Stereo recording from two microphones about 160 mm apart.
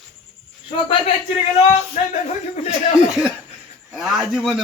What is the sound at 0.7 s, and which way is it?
Cricket, 40° left (ahead or behind).